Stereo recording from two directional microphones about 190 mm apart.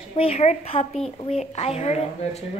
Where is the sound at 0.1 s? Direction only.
30° left (ahead or behind).